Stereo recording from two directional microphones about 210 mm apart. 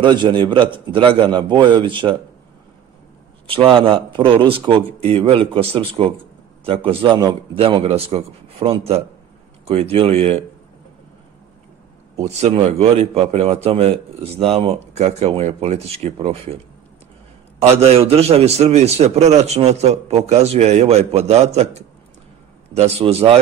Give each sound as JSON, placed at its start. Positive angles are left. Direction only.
{"t": 0.0, "sound": "a man's voice", "side_deg": -20}
{"t": 3.4, "sound": "a man's voice", "side_deg": -25}
{"t": 12.2, "sound": "a man's voice", "side_deg": -30}
{"t": 17.6, "sound": "a man's voice", "side_deg": -30}